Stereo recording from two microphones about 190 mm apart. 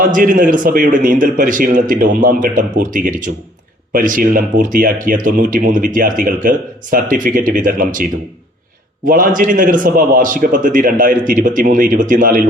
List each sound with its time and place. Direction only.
0.1 s a man's voice: 45° right (ahead or behind)
9.0 s a man's voice: 45° right (ahead or behind)